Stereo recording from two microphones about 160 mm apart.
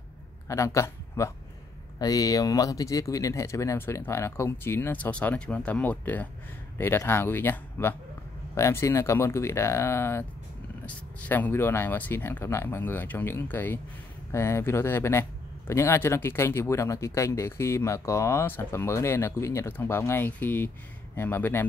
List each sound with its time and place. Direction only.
0.5 s speech: 20° left (ahead or behind)